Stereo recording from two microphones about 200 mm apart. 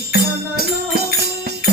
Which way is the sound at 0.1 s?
50° right (ahead or behind).